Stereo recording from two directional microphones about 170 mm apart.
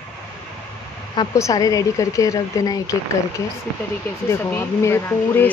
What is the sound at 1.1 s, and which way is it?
A woman's voice, 20° left (ahead or behind).